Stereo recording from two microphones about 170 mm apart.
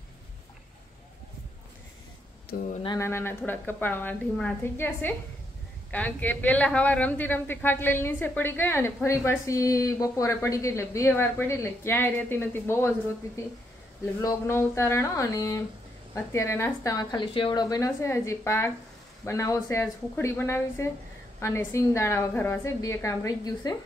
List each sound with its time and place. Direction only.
2.7 s speech: 30° left (ahead or behind)
3.0 s a woman's voice: 15° left (ahead or behind)
14.2 s a woman's voice: 15° left (ahead or behind)